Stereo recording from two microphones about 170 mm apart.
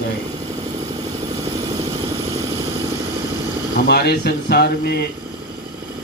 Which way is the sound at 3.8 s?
70° left (ahead or behind).